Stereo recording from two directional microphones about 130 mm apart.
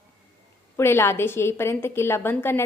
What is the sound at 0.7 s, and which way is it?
A woman's voice, 20° left (ahead or behind).